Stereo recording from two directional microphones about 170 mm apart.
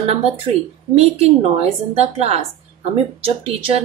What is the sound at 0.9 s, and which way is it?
A woman's voice, 35° right (ahead or behind).